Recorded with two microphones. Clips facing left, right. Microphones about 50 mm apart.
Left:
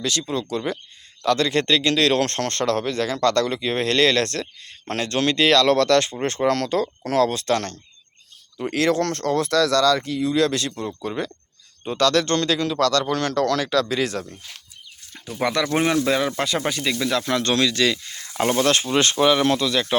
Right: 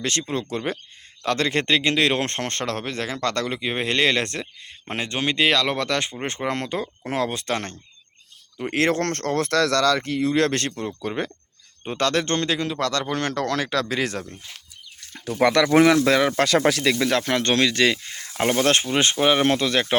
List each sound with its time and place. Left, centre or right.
0.0 s speech: right
15.1 s speech: right
16.4 s speech: right